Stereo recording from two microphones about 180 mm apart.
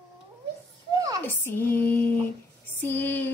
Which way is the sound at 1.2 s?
10° left (ahead or behind).